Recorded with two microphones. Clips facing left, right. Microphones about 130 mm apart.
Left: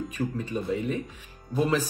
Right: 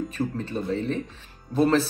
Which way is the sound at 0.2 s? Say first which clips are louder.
Right 1 dB; 35° right (ahead or behind).